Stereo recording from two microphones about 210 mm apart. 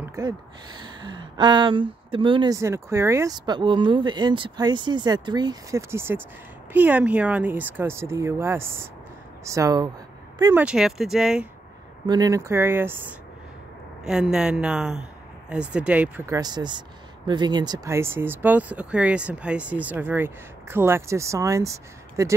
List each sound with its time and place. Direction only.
0.0 s a sound: 15° right (ahead or behind)
0.7 s a woman's voice: 20° right (ahead or behind); by 11.4 s centre (ahead or behind)
12.1 s speech: 15° right (ahead or behind)
14.0 s a woman's voice: 5° right (ahead or behind)
16.3 s speech: 20° right (ahead or behind)